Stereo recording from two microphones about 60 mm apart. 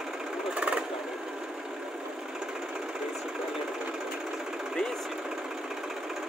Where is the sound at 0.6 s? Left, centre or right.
Right.